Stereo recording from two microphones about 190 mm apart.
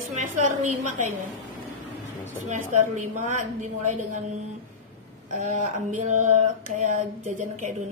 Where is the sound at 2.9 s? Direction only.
40° right (ahead or behind).